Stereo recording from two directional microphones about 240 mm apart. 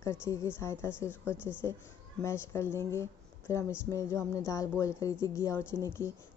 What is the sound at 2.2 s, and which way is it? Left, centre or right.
Speech, centre.